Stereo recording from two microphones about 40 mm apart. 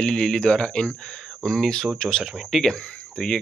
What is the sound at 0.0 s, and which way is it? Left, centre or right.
Speech, left.